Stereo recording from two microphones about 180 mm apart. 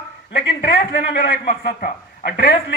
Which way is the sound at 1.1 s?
50° left (ahead or behind).